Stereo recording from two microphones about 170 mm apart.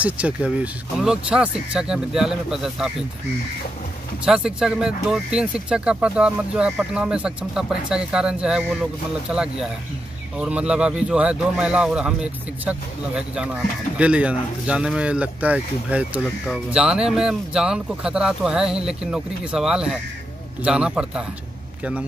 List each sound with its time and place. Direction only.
0.0 s speech: 10° right (ahead or behind)
4.2 s speech: 5° right (ahead or behind)